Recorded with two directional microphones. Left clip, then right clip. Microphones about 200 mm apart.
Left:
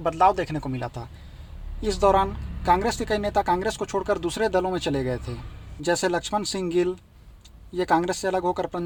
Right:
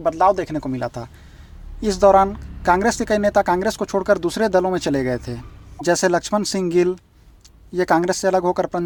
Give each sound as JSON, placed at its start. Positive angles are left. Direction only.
{"t": 0.0, "sound": "speech", "side_deg": -15}